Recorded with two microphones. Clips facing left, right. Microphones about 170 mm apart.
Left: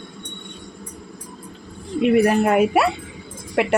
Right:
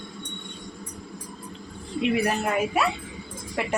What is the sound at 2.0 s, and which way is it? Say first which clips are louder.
Speech: left 8 dB; 55° left (ahead or behind).